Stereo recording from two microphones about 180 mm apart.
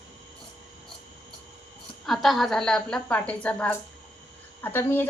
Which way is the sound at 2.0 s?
Centre (ahead or behind).